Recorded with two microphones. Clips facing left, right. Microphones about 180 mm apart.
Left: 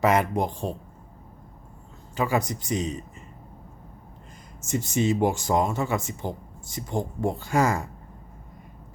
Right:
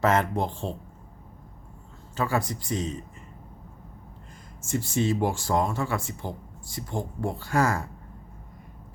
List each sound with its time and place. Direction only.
0.0 s speech: 15° left (ahead or behind)
2.1 s speech: 15° left (ahead or behind)
4.6 s speech: 20° left (ahead or behind)